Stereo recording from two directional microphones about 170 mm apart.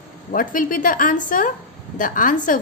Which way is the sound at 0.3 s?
50° left (ahead or behind).